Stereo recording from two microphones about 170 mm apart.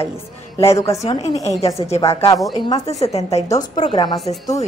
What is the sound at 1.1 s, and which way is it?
Speech, 35° left (ahead or behind).